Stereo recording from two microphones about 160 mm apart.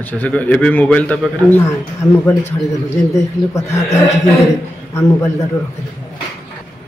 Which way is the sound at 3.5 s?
20° left (ahead or behind).